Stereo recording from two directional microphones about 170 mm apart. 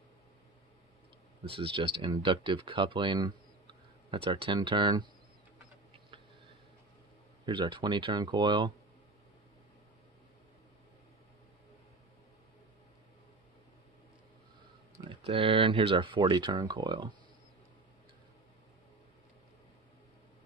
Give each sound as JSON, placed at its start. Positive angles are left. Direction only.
{"t": 1.4, "sound": "speech", "side_deg": -30}
{"t": 7.4, "sound": "speech", "side_deg": -25}
{"t": 15.2, "sound": "speech", "side_deg": -35}